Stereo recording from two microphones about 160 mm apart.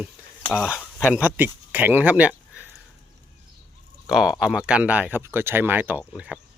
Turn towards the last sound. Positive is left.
turn(degrees=-5)  # may be behind; listen again after turning